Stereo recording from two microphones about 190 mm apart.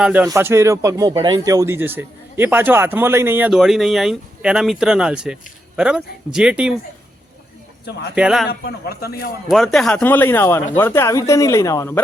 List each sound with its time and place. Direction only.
0.0 s speech: 10° right (ahead or behind)
8.1 s a man's voice: 5° right (ahead or behind)
8.4 s a man's voice: 55° left (ahead or behind)
9.5 s speech: centre (ahead or behind)